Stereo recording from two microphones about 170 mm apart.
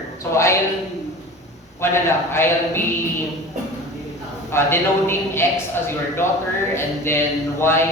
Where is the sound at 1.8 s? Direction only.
15° left (ahead or behind).